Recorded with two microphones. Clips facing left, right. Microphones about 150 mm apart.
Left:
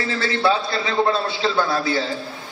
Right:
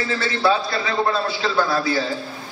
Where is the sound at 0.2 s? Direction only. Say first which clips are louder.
Left 1 dB; 25° left (ahead or behind).